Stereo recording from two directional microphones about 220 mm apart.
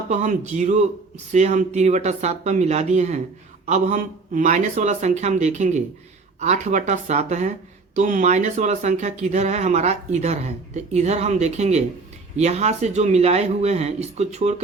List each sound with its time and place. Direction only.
0.1 s speech: 35° right (ahead or behind)